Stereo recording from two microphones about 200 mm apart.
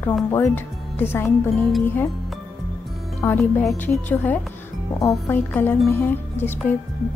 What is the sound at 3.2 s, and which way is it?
Speech, 10° left (ahead or behind).